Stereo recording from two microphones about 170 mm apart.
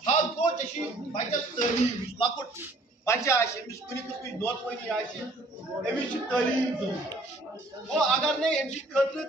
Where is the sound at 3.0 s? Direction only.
15° left (ahead or behind).